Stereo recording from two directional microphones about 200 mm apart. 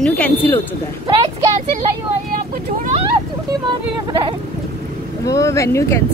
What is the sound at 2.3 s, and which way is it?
Vehicle, 45° right (ahead or behind).